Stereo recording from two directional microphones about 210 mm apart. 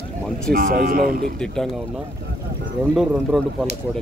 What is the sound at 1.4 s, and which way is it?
Speech, 5° left (ahead or behind).